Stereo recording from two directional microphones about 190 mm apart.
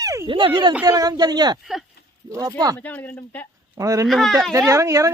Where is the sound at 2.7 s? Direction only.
10° left (ahead or behind).